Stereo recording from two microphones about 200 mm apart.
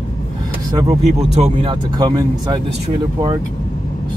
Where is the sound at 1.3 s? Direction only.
30° right (ahead or behind).